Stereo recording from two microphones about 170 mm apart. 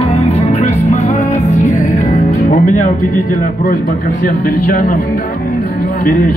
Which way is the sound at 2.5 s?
55° left (ahead or behind).